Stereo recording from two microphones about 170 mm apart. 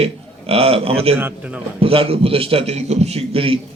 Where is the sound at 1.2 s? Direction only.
10° right (ahead or behind).